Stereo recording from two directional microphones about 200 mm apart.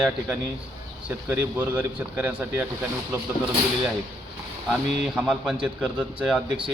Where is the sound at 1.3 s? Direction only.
5° right (ahead or behind).